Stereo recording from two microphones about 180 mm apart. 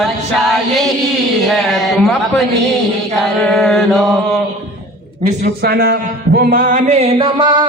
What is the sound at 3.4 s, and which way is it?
Mantra, 5° left (ahead or behind).